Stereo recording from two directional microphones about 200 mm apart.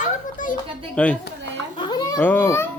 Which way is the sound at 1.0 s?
5° left (ahead or behind).